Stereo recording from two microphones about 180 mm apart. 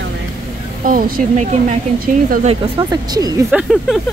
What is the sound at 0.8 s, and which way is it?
Speech, 50° right (ahead or behind).